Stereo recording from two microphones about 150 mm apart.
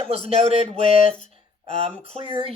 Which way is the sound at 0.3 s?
40° right (ahead or behind).